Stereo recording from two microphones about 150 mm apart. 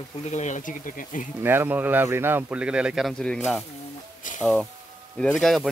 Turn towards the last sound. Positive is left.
turn(degrees=5)  # may be behind; listen again after turning